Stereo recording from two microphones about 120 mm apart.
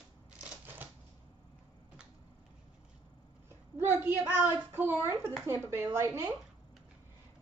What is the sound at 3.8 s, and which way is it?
A child's voice, 15° right (ahead or behind).